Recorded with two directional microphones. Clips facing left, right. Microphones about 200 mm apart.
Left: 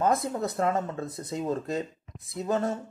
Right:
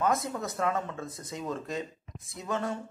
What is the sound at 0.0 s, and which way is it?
Speech, 35° left (ahead or behind).